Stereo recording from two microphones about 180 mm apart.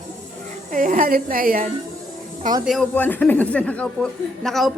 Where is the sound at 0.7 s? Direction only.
45° right (ahead or behind).